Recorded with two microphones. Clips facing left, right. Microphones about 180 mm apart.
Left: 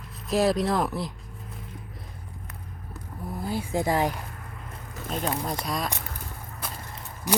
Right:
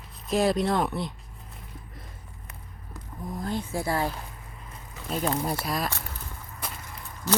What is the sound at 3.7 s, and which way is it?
Speech, 15° left (ahead or behind).